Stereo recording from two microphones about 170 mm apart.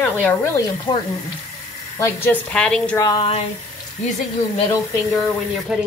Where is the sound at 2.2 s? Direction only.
5° left (ahead or behind).